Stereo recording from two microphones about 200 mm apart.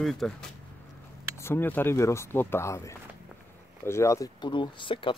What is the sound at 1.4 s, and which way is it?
Speech, 10° left (ahead or behind).